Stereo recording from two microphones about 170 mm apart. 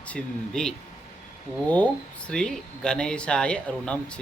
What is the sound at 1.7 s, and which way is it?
Speech, 5° left (ahead or behind).